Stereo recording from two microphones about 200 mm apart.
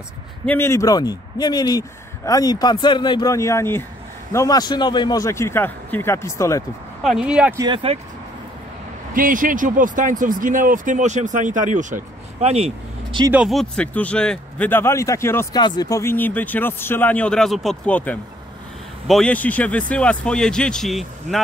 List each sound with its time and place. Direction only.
0.5 s a man's voice: 10° left (ahead or behind)
7.0 s a man's voice: centre (ahead or behind)
7.5 s speech: 25° right (ahead or behind)
9.1 s speech: 45° right (ahead or behind)
13.3 s a man's voice: 5° right (ahead or behind)